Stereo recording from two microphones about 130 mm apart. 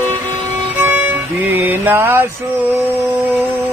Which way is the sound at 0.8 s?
15° right (ahead or behind).